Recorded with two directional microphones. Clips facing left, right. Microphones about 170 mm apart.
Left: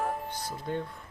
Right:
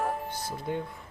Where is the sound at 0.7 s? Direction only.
15° right (ahead or behind).